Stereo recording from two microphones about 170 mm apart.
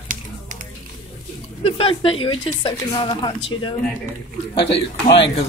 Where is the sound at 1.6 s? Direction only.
30° left (ahead or behind).